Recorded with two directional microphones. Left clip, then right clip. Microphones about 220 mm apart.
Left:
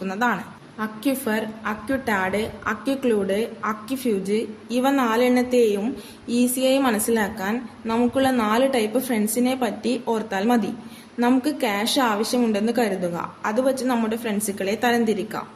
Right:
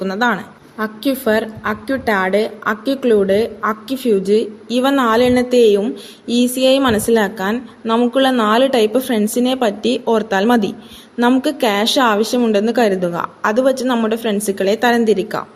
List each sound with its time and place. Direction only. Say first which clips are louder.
0.0 s a woman's voice: right 6 dB; 20° right (ahead or behind)